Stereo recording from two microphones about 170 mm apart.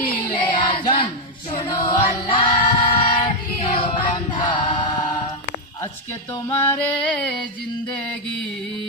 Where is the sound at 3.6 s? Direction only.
30° left (ahead or behind).